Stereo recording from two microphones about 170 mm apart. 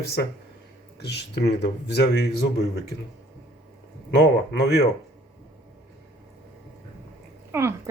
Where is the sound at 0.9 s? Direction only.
80° left.